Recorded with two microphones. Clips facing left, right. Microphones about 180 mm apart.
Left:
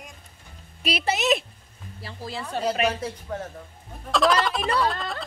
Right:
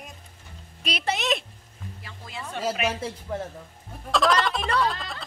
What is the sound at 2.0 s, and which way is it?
Speech, 35° left (ahead or behind).